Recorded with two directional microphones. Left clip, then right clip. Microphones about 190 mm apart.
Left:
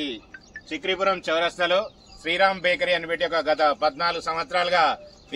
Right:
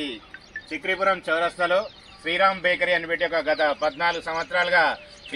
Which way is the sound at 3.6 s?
25° left (ahead or behind).